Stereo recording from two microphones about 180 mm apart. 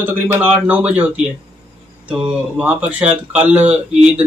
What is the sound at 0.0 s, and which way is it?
A man's voice, 10° right (ahead or behind).